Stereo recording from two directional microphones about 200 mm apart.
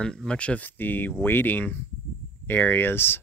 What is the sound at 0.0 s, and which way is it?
Speech, 5° left (ahead or behind).